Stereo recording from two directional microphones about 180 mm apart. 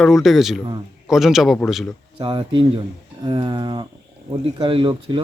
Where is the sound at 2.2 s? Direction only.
30° right (ahead or behind).